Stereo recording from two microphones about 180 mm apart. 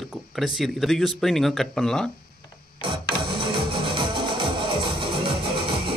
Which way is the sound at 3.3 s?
30° right (ahead or behind).